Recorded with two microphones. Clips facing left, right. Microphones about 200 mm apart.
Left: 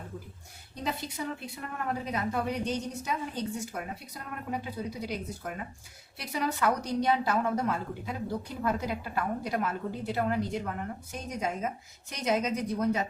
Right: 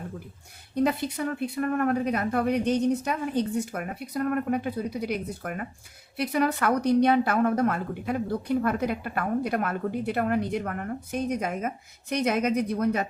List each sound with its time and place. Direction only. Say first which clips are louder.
0.8 s a woman's voice: right 9 dB; 55° right (ahead or behind)